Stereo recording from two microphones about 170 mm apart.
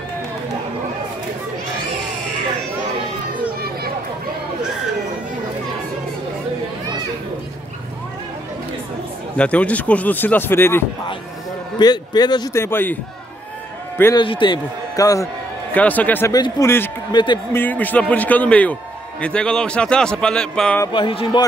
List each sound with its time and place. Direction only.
9.4 s a man's voice: 10° left (ahead or behind)
11.8 s a man's voice: 25° left (ahead or behind)
12.6 s a man's voice: 10° left (ahead or behind)
14.1 s a man's voice: 30° left (ahead or behind)
15.7 s a man's voice: 10° left (ahead or behind)
16.3 s a man's voice: 25° left (ahead or behind)
16.6 s a man's voice: 15° left (ahead or behind)
17.1 s a man's voice: 25° left (ahead or behind)
17.5 s a man's voice: 10° left (ahead or behind)
20.8 s a man's voice: 30° left (ahead or behind)